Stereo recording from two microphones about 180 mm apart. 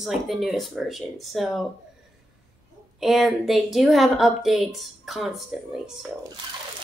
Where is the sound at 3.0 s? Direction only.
Centre (ahead or behind).